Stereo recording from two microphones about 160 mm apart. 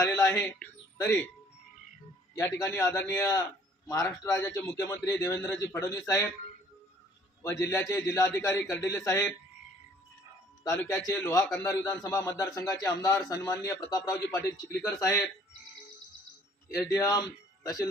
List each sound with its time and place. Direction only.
0.0 s speech: 20° left (ahead or behind)
2.3 s speech: 20° left (ahead or behind)
7.6 s speech: 20° left (ahead or behind)
10.6 s speech: 20° left (ahead or behind)
16.7 s speech: 20° left (ahead or behind)